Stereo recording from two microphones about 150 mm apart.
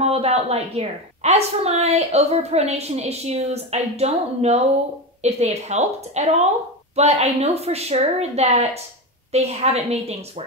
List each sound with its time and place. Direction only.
0.0 s a woman's voice: 45° right (ahead or behind)